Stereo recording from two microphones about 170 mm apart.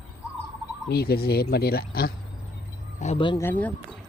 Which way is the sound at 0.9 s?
65° left (ahead or behind).